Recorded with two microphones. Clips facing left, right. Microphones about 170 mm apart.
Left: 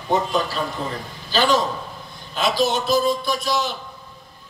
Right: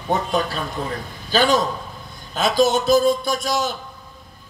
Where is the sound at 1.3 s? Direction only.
50° right (ahead or behind).